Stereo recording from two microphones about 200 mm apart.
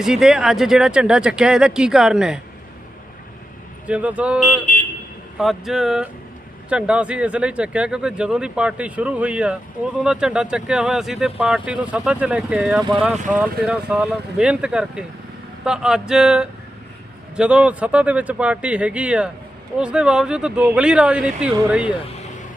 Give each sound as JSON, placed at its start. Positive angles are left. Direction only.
{"t": 0.0, "sound": "speech", "side_deg": 0}
{"t": 3.8, "sound": "speech", "side_deg": -5}
{"t": 4.4, "sound": "speech", "side_deg": 40}
{"t": 5.4, "sound": "speech", "side_deg": 0}
{"t": 13.1, "sound": "speech", "side_deg": -40}
{"t": 13.4, "sound": "speech", "side_deg": -5}